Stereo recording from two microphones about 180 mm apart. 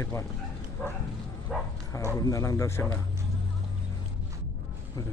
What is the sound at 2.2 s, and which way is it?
Speech, 15° left (ahead or behind).